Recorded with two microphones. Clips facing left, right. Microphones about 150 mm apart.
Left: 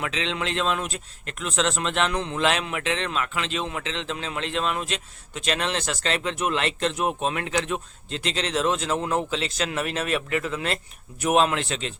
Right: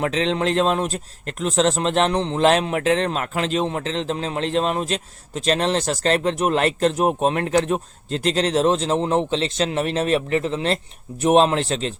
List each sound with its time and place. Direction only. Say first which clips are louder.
0.0 s speech: right 8 dB; 40° right (ahead or behind)